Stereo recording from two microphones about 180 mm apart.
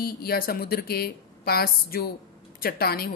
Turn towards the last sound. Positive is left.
turn(degrees=60)  # may be behind; listen again after turning